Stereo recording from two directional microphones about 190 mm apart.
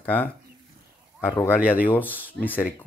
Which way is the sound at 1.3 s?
10° left (ahead or behind).